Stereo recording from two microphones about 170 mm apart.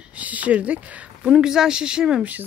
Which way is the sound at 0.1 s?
10° right (ahead or behind).